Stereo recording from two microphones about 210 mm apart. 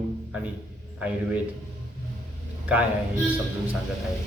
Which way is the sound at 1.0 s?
5° right (ahead or behind).